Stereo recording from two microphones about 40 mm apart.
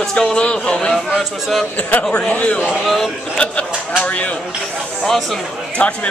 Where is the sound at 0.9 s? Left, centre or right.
Centre.